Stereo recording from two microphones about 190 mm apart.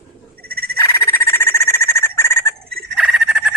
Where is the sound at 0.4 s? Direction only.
55° right (ahead or behind).